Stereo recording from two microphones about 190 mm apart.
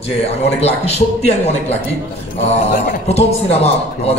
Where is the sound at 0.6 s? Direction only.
35° left (ahead or behind).